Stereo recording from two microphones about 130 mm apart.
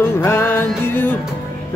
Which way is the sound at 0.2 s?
20° left (ahead or behind).